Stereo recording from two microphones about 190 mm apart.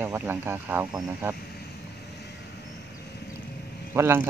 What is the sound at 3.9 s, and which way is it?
Speech, 15° right (ahead or behind).